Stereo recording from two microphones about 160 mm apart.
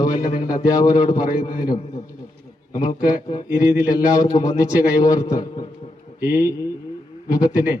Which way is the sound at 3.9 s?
25° left (ahead or behind).